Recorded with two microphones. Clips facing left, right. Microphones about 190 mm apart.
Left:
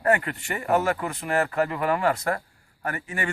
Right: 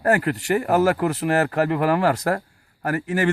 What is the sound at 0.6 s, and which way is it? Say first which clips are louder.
Speech: right 3 dB; 65° right (ahead or behind).